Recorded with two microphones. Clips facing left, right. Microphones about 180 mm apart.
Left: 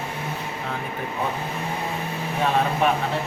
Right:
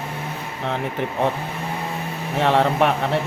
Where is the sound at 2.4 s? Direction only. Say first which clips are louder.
Right 4 dB; 80° right.